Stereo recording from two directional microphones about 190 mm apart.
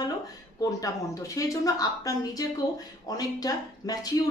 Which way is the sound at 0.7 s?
15° left (ahead or behind).